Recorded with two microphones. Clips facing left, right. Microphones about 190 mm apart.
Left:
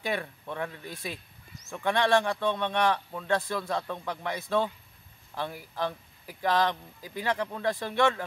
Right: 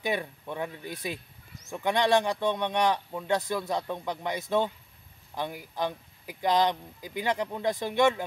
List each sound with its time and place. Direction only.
0.0 s speech: 15° right (ahead or behind)